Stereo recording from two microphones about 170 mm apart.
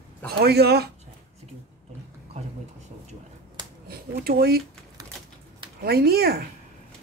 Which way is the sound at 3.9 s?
65° right (ahead or behind).